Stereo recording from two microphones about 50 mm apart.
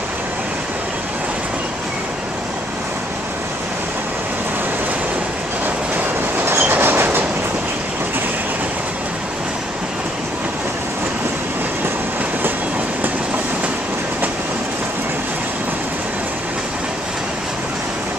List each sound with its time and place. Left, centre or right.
6.6 s train: right